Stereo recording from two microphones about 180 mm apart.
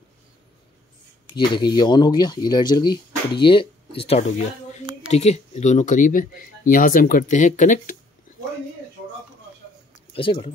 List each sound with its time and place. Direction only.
1.3 s speech: 25° left (ahead or behind); by 7.9 s 45° left (ahead or behind)
10.1 s speech: 30° left (ahead or behind)